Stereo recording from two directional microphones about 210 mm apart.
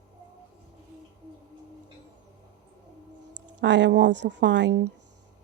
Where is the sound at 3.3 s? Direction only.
55° right (ahead or behind).